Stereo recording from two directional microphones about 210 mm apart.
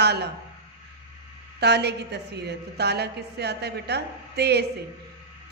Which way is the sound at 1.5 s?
50° right (ahead or behind).